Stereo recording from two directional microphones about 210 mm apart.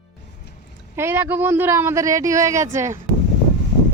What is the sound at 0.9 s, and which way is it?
Speech, 10° right (ahead or behind).